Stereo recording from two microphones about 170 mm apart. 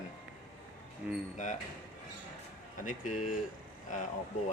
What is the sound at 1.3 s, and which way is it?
Speech, 45° left (ahead or behind).